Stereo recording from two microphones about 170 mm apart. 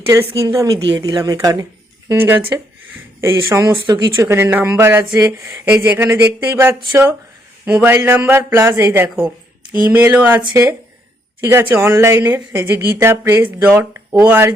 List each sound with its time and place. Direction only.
0.3 s a woman's voice: 20° right (ahead or behind)